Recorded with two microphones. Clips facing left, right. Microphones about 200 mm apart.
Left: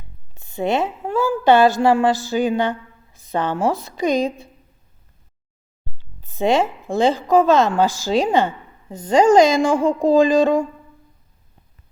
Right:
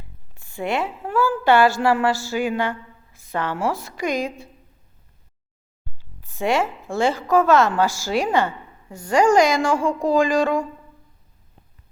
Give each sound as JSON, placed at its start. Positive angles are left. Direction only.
{"t": 0.3, "sound": "a woman's voice", "side_deg": 20}
{"t": 6.2, "sound": "a woman's voice", "side_deg": 20}